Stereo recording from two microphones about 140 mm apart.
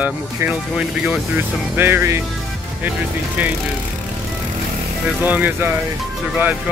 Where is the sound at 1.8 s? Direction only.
15° right (ahead or behind).